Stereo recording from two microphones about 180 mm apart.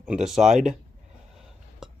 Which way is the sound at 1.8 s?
5° right (ahead or behind).